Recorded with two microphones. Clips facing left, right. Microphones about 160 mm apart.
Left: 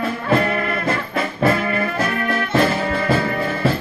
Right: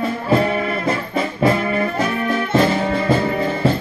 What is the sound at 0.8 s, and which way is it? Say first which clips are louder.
Music: right 1 dB; 20° right (ahead or behind).